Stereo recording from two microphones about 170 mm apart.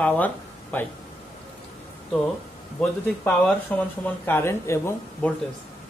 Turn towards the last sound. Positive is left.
turn(degrees=15)  # may be behind; listen again after turning